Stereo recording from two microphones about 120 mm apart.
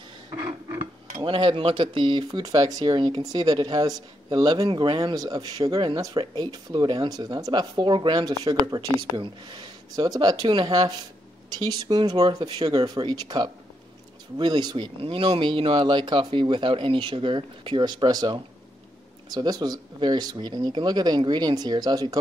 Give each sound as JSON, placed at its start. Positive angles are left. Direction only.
{"t": 0.3, "sound": "a sound", "side_deg": -35}
{"t": 1.2, "sound": "speech", "side_deg": -45}
{"t": 15.0, "sound": "speech", "side_deg": -50}